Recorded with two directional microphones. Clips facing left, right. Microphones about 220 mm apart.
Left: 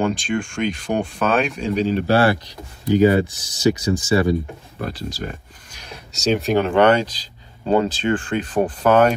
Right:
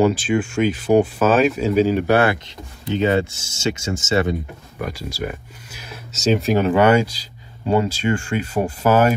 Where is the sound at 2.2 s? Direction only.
20° right (ahead or behind).